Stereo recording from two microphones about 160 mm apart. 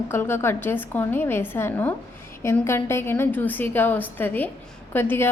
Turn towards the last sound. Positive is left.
turn(degrees=15)  # may be behind; listen again after turning